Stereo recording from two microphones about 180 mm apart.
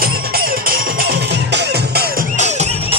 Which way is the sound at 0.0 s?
55° right (ahead or behind).